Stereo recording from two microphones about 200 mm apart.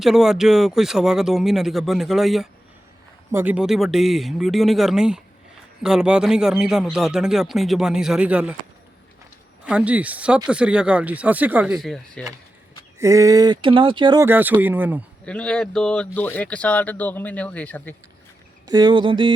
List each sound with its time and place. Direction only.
0.0 s speech: centre (ahead or behind)
9.6 s speech: 5° right (ahead or behind)
13.0 s speech: 15° right (ahead or behind)
14.3 s speech: 10° right (ahead or behind)
15.2 s speech: 5° left (ahead or behind)
18.6 s speech: 20° right (ahead or behind)